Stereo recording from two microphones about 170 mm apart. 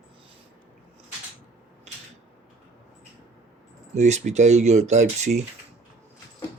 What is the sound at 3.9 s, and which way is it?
Speech, 40° right (ahead or behind).